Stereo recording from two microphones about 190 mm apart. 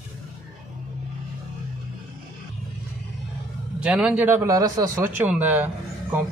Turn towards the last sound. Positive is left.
turn(degrees=-10)  # may be behind; listen again after turning